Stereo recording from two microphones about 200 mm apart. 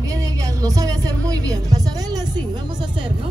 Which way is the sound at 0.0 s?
15° right (ahead or behind).